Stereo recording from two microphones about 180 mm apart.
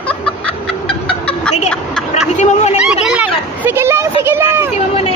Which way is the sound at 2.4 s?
40° left (ahead or behind).